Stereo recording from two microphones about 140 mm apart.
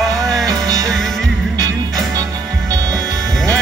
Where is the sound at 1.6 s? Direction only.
25° right (ahead or behind).